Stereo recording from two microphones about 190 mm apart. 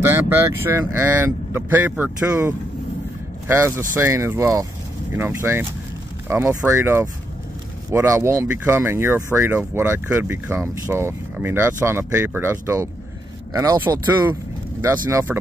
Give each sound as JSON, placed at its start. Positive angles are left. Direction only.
{"t": 0.0, "sound": "speech", "side_deg": -10}